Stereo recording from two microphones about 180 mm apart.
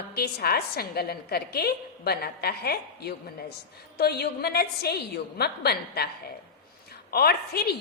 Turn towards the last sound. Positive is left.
turn(degrees=60)  # may be behind; listen again after turning